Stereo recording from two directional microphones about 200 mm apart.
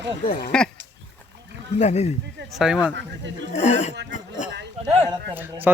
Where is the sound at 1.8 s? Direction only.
35° left (ahead or behind).